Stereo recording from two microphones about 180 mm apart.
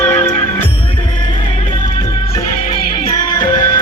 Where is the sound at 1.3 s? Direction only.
30° left (ahead or behind).